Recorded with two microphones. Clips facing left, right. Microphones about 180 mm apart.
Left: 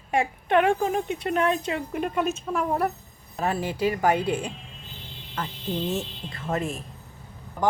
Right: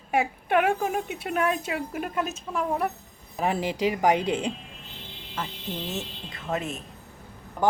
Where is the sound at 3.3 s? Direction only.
15° right (ahead or behind).